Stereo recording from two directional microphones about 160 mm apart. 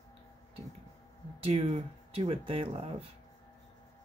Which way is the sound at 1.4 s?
40° right (ahead or behind).